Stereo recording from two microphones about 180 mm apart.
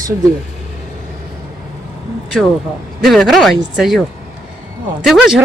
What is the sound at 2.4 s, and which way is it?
Speech, 5° right (ahead or behind).